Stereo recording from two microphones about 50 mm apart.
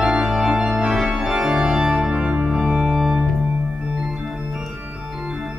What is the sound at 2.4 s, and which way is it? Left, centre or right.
Organ, centre.